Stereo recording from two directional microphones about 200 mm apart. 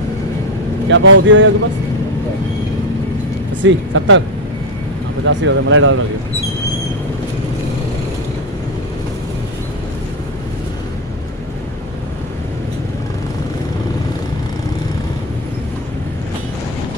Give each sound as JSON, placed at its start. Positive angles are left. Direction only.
{"t": 0.8, "sound": "speech", "side_deg": -65}
{"t": 3.6, "sound": "speech", "side_deg": -75}
{"t": 5.2, "sound": "speech", "side_deg": -70}